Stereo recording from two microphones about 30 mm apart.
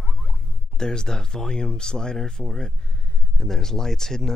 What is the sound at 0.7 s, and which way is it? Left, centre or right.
Speech, left.